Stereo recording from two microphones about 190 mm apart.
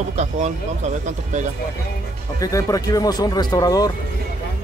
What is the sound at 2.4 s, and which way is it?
Speech, 15° left (ahead or behind).